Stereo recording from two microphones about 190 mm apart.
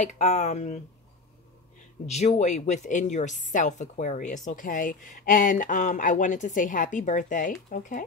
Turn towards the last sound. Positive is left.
turn(degrees=45)  # may be behind; listen again after turning